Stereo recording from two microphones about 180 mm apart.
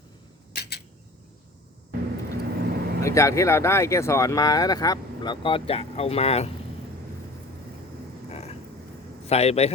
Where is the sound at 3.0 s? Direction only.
15° left (ahead or behind); by 6.5 s 35° left (ahead or behind).